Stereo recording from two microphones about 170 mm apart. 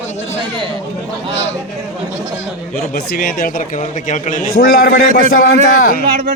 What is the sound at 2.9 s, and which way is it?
Speech, 60° left (ahead or behind).